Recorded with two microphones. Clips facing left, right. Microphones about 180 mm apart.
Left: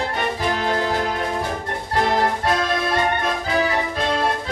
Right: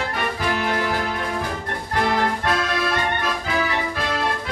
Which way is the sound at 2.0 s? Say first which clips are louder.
Left 2 dB; 20° left (ahead or behind).